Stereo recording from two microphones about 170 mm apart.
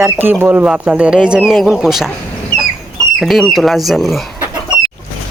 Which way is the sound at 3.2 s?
Centre (ahead or behind).